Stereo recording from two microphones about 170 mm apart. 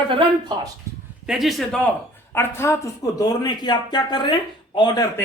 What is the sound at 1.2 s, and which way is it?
A man's voice, centre (ahead or behind).